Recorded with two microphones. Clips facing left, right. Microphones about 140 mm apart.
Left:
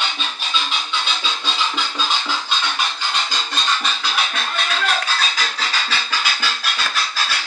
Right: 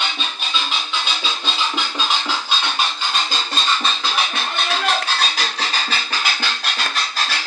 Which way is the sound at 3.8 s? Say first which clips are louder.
Right 1 dB; 30° right (ahead or behind).